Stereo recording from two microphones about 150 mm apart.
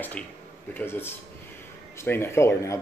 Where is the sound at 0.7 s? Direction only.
15° left (ahead or behind).